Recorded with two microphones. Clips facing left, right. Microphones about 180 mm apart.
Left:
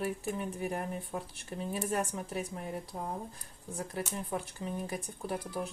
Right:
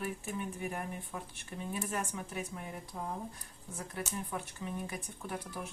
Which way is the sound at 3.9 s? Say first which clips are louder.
Left 2 dB; 35° left (ahead or behind).